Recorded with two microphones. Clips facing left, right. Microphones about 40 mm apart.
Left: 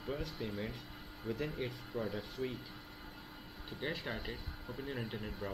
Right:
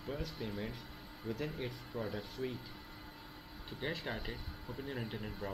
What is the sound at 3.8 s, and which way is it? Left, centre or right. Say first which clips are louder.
Speech: even; centre.